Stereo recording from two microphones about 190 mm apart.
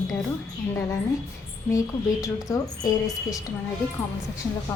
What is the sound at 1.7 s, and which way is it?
Speech, 20° left (ahead or behind).